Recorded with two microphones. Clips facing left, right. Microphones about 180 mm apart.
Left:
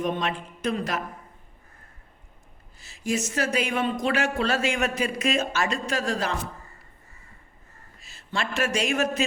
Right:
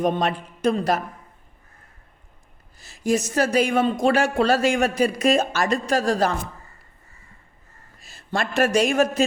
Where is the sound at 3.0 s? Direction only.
40° right (ahead or behind).